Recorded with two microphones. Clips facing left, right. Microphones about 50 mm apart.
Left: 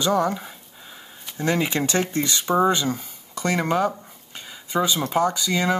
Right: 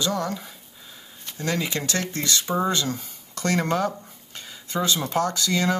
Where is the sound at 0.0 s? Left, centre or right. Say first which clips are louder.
Left 5 dB; left.